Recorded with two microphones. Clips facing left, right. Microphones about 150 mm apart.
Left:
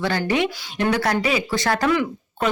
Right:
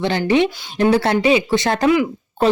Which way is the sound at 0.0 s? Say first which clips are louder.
Right 5 dB; 20° right (ahead or behind).